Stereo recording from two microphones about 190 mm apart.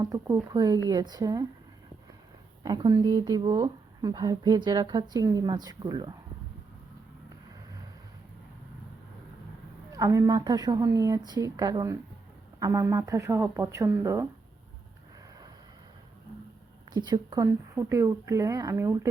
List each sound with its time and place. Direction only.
0.0 s a woman's voice: 15° right (ahead or behind)
2.6 s speech: 20° right (ahead or behind)
9.9 s a woman's voice: 15° right (ahead or behind)
16.9 s a woman's voice: 20° right (ahead or behind)